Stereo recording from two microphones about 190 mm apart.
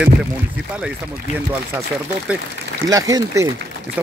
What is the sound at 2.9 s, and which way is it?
Speech, 20° right (ahead or behind).